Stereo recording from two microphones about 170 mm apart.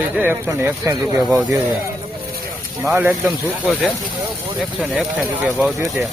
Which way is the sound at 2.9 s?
15° right (ahead or behind).